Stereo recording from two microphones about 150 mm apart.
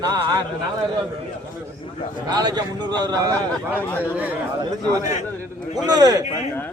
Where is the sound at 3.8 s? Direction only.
15° left (ahead or behind).